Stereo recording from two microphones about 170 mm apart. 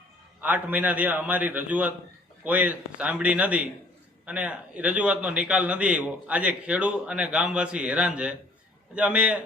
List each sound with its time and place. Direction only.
0.4 s a man's voice: 10° right (ahead or behind)